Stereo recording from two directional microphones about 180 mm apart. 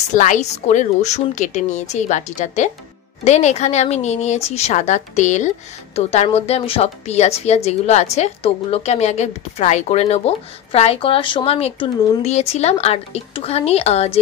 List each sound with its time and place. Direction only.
0.1 s a woman's voice: 45° left (ahead or behind)